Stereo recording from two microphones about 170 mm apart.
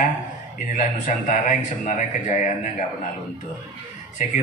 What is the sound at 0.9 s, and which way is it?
A man's voice, 50° left (ahead or behind).